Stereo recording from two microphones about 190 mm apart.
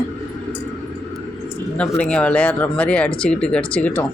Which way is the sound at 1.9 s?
5° left (ahead or behind).